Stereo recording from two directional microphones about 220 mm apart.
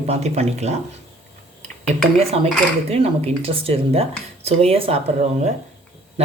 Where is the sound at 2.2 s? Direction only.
25° right (ahead or behind).